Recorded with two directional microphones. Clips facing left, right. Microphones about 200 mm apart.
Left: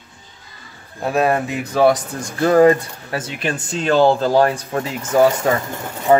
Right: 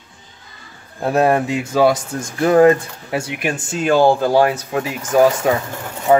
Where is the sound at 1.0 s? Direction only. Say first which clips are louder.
Right 2 dB; 15° right (ahead or behind).